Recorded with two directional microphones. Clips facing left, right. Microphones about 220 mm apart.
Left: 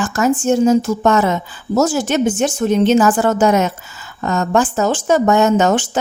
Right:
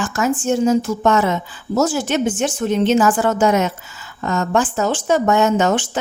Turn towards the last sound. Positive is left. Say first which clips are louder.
# left 3 dB
turn(degrees=45)  # may be behind; listen again after turning